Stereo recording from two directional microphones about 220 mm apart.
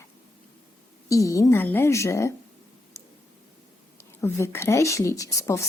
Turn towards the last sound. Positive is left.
turn(degrees=15)  # may be behind; listen again after turning